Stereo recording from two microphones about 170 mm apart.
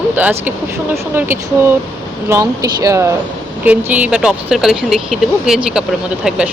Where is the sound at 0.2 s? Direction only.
10° right (ahead or behind).